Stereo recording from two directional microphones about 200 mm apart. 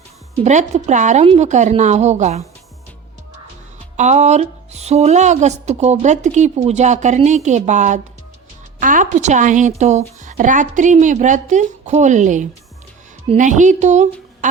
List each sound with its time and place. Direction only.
0.7 s a woman's voice: 35° right (ahead or behind)
3.9 s a woman's voice: 35° right (ahead or behind)